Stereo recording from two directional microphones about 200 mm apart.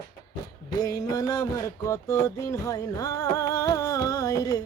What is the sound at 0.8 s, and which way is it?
Music, 20° left (ahead or behind).